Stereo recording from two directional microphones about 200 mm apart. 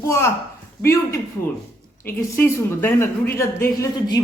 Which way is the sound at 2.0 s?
10° left (ahead or behind).